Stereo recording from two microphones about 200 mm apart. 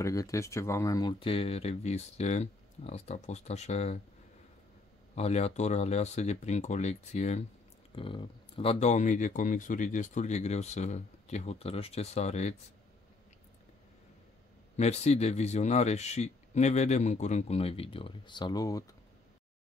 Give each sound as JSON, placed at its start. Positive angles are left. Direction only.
{"t": 0.0, "sound": "speech", "side_deg": 15}
{"t": 5.1, "sound": "speech", "side_deg": 30}
{"t": 14.8, "sound": "speech", "side_deg": 35}